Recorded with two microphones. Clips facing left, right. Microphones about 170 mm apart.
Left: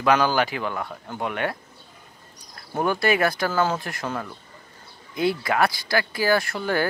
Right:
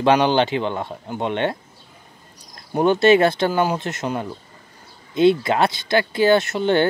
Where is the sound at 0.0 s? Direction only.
25° right (ahead or behind).